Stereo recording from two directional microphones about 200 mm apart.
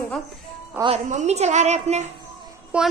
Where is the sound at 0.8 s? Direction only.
35° right (ahead or behind).